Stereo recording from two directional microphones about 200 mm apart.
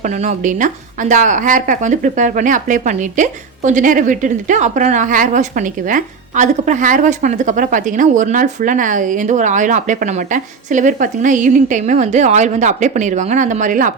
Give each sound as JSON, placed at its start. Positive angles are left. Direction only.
{"t": 0.3, "sound": "a woman's voice", "side_deg": -40}